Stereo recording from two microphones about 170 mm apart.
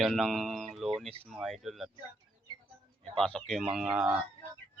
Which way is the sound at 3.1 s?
5° left (ahead or behind).